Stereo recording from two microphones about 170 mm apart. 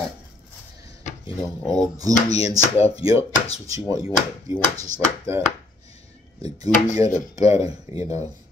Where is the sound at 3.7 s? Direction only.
20° right (ahead or behind).